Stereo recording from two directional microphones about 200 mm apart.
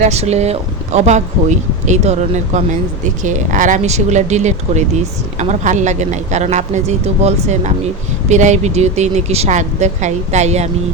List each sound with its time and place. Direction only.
0.0 s speech: 35° right (ahead or behind)